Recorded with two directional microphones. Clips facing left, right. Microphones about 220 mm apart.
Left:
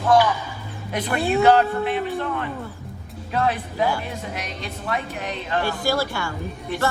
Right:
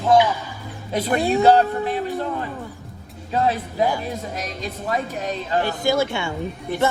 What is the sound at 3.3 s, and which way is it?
Speech, 30° right (ahead or behind).